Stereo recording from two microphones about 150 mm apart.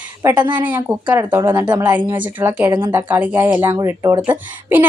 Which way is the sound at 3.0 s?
10° right (ahead or behind).